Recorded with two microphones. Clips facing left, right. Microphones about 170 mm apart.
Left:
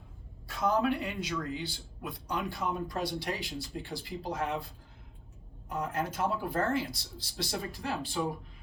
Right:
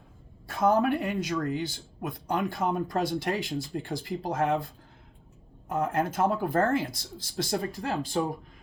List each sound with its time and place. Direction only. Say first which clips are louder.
0.4 s speech: right 5 dB; 50° right (ahead or behind)